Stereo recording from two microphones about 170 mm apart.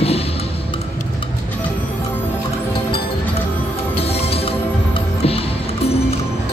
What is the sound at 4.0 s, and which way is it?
Music, 35° left (ahead or behind).